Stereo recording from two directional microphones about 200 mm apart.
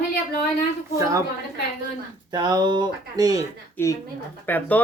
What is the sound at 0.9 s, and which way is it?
Speech, 15° right (ahead or behind).